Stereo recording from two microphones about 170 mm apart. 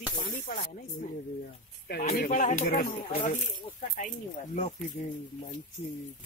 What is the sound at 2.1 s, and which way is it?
Speech, 50° left (ahead or behind).